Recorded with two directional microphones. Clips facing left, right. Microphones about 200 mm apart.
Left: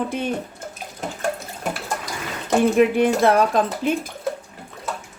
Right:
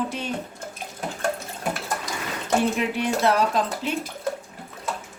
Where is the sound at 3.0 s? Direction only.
50° left (ahead or behind).